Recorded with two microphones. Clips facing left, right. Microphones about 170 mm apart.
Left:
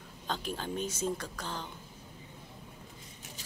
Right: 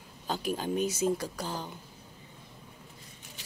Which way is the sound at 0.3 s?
10° right (ahead or behind).